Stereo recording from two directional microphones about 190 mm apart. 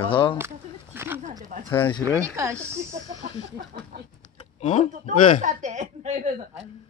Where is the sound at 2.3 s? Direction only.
15° right (ahead or behind).